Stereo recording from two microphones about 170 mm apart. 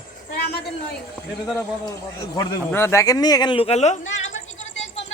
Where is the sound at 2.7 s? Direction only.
15° left (ahead or behind); by 4.4 s 40° left (ahead or behind).